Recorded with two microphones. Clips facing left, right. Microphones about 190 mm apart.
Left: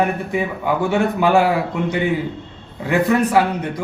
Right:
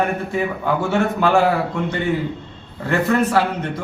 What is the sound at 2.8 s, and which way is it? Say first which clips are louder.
A man's voice: left 1 dB; 15° left (ahead or behind).